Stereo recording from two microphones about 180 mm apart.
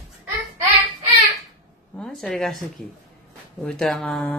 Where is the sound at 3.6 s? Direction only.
5° left (ahead or behind).